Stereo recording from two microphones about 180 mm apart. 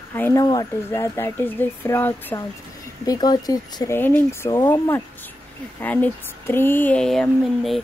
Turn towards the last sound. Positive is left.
turn(degrees=0)  # may be behind; listen again after turning